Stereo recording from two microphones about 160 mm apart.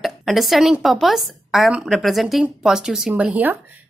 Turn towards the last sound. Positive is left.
turn(degrees=-10)  # may be behind; listen again after turning